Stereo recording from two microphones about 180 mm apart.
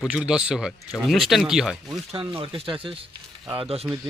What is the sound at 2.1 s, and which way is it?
Speech, 30° right (ahead or behind).